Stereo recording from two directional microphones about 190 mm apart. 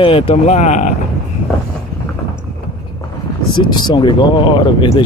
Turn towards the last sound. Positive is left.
turn(degrees=25)  # may be behind; listen again after turning